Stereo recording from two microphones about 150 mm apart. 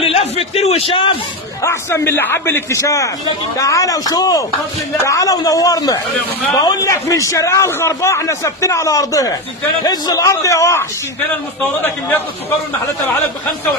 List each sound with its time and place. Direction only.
0.0 s a man's voice: 40° left (ahead or behind)
1.6 s a man's voice: 15° left (ahead or behind)